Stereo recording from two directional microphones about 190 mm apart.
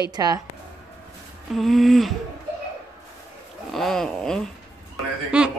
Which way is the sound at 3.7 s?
Centre (ahead or behind).